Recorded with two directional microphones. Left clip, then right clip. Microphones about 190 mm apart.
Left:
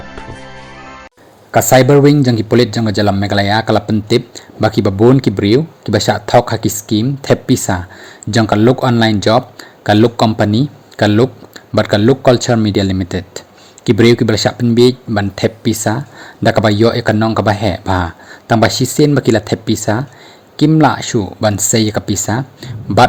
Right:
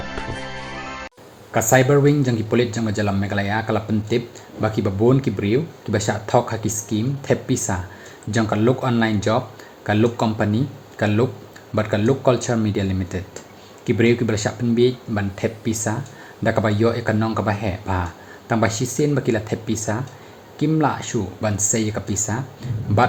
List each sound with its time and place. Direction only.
0.0 s music: centre (ahead or behind)
1.5 s a man's voice: 45° left (ahead or behind)